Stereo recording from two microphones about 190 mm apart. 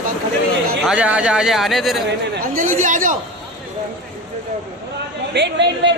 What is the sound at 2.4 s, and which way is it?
Speech, 45° right (ahead or behind).